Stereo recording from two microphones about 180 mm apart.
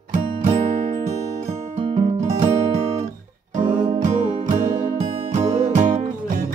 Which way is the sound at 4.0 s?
40° right (ahead or behind).